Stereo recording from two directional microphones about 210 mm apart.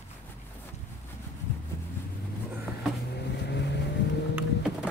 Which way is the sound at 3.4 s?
55° left (ahead or behind).